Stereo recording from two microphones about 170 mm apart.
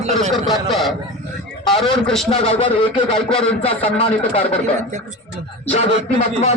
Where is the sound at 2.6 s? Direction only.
30° left (ahead or behind).